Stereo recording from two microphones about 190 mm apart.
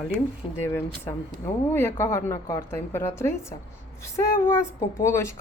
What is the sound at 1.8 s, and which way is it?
A woman's voice, 15° left (ahead or behind).